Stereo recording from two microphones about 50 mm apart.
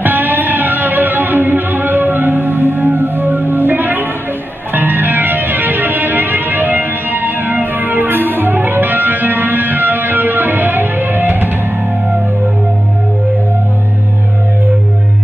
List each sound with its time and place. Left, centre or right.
0.0 s music: right